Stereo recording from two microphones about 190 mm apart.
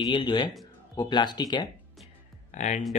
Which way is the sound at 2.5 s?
40° left (ahead or behind).